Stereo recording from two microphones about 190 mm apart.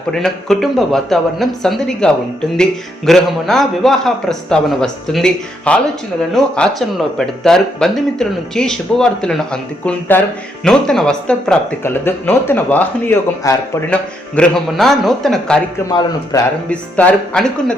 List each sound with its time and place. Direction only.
0.1 s speech: centre (ahead or behind)
15.9 s a man's voice: 20° left (ahead or behind)
16.6 s speech: 5° left (ahead or behind)